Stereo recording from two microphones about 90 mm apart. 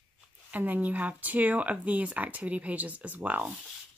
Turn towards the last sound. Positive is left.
turn(degrees=-20)  # may be behind; listen again after turning